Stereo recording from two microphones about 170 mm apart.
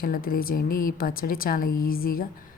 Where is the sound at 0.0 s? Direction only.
60° left (ahead or behind).